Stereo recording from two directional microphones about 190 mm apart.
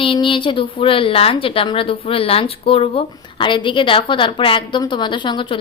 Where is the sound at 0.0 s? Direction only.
25° left (ahead or behind).